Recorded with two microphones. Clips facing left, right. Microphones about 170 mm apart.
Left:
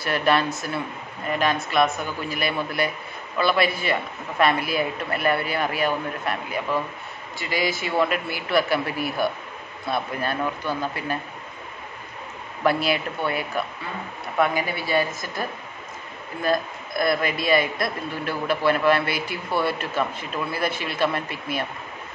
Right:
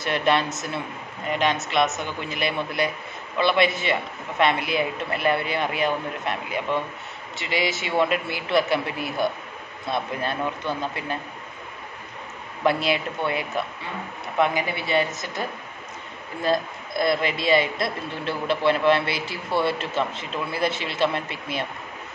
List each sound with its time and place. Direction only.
0.0 s a man's voice: 25° right (ahead or behind)
12.6 s a man's voice: 25° right (ahead or behind)
16.4 s a man's voice: 25° right (ahead or behind)